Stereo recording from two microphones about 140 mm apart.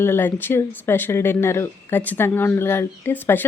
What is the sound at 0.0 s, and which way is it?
Speech, 15° left (ahead or behind).